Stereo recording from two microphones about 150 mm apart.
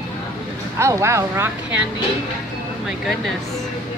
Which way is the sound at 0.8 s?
20° right (ahead or behind).